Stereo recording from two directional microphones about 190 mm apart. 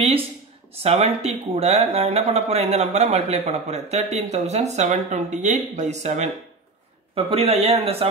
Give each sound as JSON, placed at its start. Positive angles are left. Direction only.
{"t": 0.8, "sound": "speech", "side_deg": -35}